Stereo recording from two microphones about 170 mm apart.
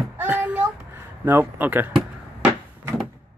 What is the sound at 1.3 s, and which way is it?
Speech, 10° right (ahead or behind).